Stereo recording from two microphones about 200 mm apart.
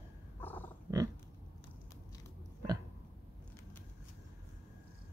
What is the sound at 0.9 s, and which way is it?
Pig, 10° right (ahead or behind).